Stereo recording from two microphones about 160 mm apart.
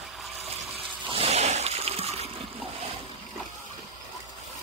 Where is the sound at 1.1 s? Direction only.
40° right (ahead or behind).